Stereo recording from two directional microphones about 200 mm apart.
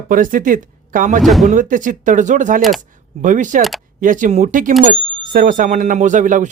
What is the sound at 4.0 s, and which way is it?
Speech, 40° right (ahead or behind).